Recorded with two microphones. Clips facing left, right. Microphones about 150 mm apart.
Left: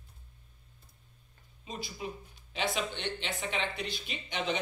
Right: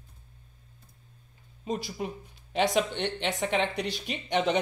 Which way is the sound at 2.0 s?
50° right (ahead or behind).